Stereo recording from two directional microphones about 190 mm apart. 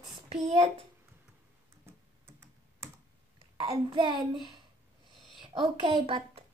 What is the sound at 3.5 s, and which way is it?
Speech, 30° right (ahead or behind).